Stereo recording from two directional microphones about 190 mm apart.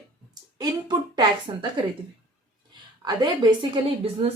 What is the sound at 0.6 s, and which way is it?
Speech, 20° right (ahead or behind).